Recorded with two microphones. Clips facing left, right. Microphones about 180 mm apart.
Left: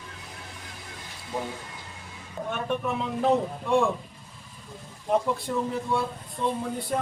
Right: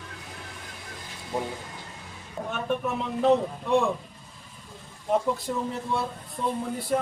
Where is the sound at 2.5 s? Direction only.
Centre (ahead or behind).